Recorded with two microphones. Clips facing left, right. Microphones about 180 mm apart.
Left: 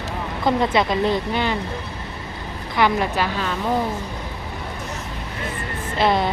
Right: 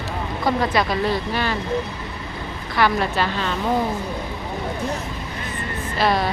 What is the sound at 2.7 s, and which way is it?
Speech, 15° left (ahead or behind).